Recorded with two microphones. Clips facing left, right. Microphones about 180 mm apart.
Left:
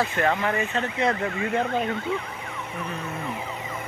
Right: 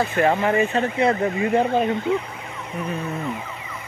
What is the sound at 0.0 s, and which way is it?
Speech, 25° right (ahead or behind).